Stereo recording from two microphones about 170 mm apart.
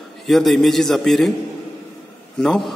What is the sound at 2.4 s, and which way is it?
Speech, centre (ahead or behind).